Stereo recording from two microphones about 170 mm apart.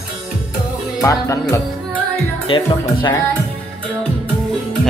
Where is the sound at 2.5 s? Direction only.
30° left (ahead or behind).